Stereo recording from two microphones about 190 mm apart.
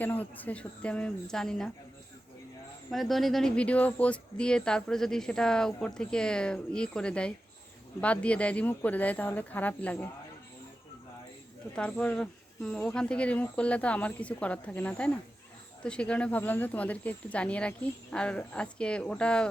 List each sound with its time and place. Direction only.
0.0 s speech: 10° left (ahead or behind)
2.9 s speech: centre (ahead or behind)
11.7 s speech: 5° left (ahead or behind)